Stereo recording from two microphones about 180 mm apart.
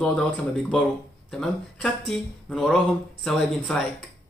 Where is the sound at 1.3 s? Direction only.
5° left (ahead or behind).